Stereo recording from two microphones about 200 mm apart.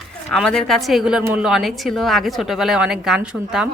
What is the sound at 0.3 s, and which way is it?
A woman's voice, 5° left (ahead or behind).